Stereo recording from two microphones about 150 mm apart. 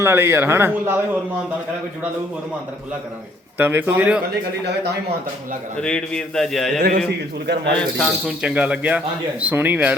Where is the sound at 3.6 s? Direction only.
10° right (ahead or behind).